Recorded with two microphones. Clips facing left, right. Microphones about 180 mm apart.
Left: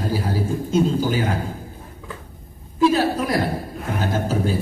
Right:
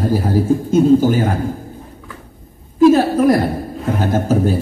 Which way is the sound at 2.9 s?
50° right (ahead or behind).